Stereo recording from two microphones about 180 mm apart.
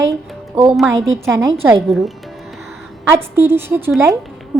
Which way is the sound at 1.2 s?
15° right (ahead or behind).